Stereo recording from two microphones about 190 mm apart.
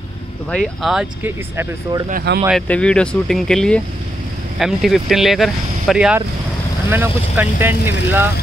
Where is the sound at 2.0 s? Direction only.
50° right (ahead or behind).